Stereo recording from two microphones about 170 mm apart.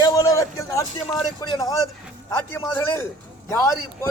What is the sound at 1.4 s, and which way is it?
A man's voice, 20° left (ahead or behind).